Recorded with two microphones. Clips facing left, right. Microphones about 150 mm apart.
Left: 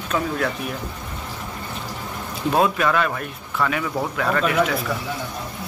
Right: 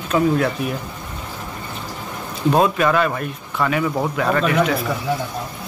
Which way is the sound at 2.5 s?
Centre (ahead or behind).